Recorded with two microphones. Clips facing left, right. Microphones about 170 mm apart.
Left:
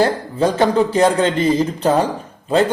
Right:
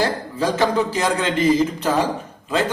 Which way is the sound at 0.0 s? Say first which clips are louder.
Left 5 dB; 25° left (ahead or behind).